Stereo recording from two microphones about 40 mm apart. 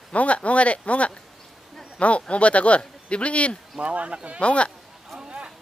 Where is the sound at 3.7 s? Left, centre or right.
Right.